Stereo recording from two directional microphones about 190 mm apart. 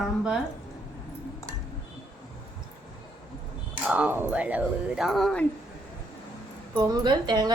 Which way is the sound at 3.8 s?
5° right (ahead or behind).